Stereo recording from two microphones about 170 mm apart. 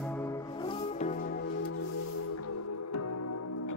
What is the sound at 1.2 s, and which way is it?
Music, 60° left (ahead or behind).